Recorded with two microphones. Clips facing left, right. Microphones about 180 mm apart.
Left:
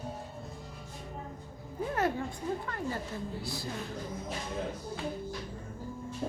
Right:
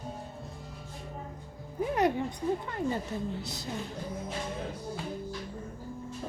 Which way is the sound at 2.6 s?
20° right (ahead or behind).